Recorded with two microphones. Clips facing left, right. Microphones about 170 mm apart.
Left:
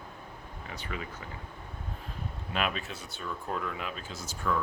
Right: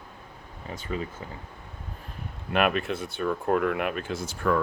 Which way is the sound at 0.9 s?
30° right (ahead or behind).